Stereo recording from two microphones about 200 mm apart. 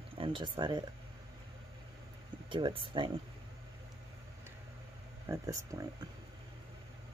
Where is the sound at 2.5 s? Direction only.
25° right (ahead or behind).